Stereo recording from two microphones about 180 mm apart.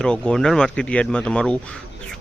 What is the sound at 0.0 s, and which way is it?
Speech, 5° left (ahead or behind).